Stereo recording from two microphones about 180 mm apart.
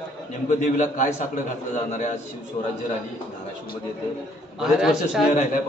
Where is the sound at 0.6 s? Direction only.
45° left (ahead or behind).